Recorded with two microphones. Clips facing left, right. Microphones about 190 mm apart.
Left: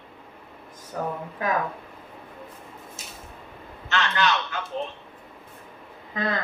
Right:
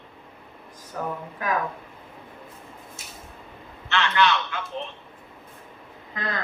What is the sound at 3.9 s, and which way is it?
Speech, 40° left (ahead or behind).